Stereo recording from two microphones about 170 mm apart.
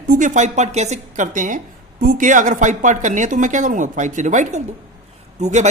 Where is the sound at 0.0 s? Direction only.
50° right (ahead or behind).